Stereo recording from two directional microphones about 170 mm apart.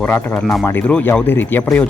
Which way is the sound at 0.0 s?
10° left (ahead or behind).